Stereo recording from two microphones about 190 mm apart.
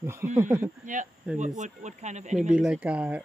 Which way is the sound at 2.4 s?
5° right (ahead or behind).